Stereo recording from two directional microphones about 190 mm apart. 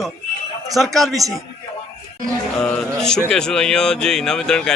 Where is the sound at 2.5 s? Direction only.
5° left (ahead or behind).